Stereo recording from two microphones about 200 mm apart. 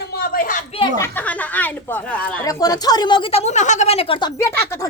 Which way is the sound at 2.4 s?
15° left (ahead or behind).